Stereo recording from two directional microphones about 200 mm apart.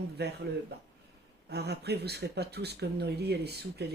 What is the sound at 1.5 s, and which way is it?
Speech, 55° right (ahead or behind).